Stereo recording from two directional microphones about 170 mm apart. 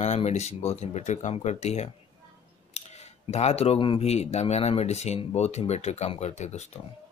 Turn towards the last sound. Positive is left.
turn(degrees=40)  # may be behind; listen again after turning